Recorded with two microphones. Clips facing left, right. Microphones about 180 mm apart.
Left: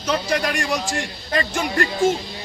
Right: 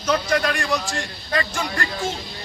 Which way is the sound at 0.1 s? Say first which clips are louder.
Right 1 dB; 15° left (ahead or behind).